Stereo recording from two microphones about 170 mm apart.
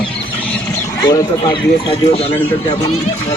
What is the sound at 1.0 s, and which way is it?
Speech, 25° left (ahead or behind).